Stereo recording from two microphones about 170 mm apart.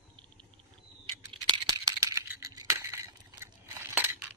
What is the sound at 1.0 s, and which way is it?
Scissors, 25° right (ahead or behind).